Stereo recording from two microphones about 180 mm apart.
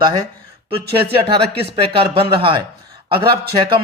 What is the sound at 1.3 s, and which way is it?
Speech, 30° right (ahead or behind).